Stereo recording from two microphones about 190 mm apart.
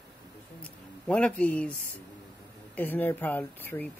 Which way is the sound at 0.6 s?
5° left (ahead or behind).